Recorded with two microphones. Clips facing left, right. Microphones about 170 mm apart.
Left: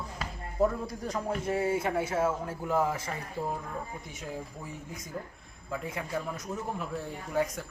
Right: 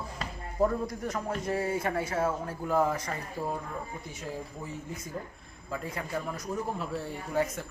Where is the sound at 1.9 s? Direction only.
25° left (ahead or behind).